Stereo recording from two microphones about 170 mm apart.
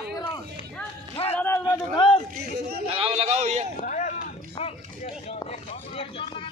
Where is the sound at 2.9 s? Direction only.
35° right (ahead or behind).